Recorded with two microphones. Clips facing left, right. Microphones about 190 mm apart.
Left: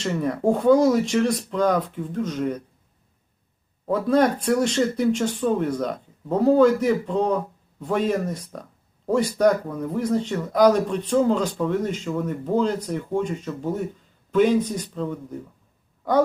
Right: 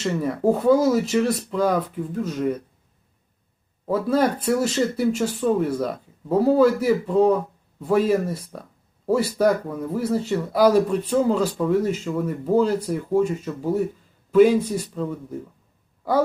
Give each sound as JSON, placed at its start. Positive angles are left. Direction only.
{"t": 0.0, "sound": "speech", "side_deg": -5}
{"t": 3.8, "sound": "speech", "side_deg": -5}